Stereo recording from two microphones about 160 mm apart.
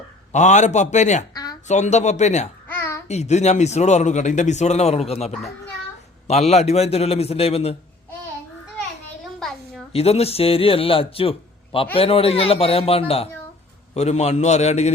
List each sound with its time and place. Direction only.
0.3 s speech: 45° left (ahead or behind)
1.3 s a sound: 25° left (ahead or behind)
1.6 s speech: 45° left (ahead or behind)
2.6 s babbling: 15° left (ahead or behind)
3.1 s speech: 45° left (ahead or behind)
9.4 s a sound: centre (ahead or behind)
9.9 s speech: 40° left (ahead or behind)